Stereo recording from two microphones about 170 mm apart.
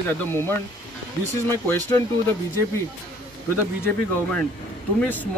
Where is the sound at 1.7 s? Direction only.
15° left (ahead or behind).